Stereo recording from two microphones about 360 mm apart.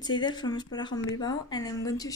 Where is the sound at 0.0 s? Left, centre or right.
Centre.